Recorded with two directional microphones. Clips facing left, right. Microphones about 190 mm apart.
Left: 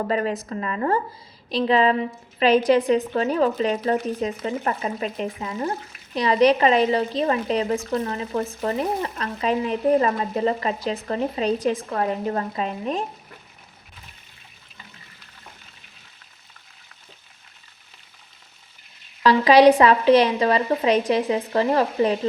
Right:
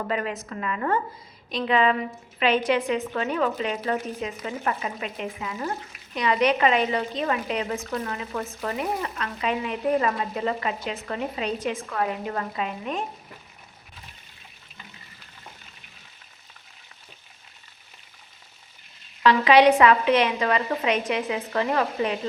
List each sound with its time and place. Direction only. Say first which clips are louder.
0.1 s speech: left 5 dB; 35° left (ahead or behind)
19.2 s speech: left 3 dB; 35° left (ahead or behind)